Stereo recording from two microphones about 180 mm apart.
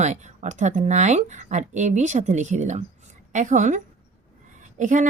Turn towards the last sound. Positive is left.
turn(degrees=-45)  # may be behind; listen again after turning